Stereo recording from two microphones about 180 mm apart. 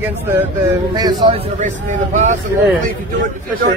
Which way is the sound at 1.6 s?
45° right (ahead or behind).